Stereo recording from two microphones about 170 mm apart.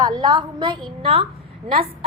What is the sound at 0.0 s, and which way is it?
A woman's voice, 25° right (ahead or behind).